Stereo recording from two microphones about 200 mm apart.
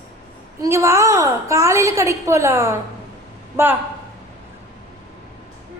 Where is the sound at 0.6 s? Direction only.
15° right (ahead or behind).